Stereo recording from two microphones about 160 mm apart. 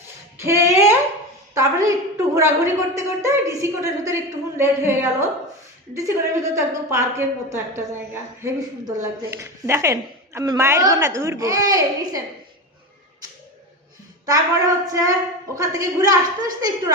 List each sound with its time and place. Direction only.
0.3 s a sound: 15° right (ahead or behind)
1.5 s a woman's voice: 20° right (ahead or behind)
14.3 s a woman's voice: 20° right (ahead or behind)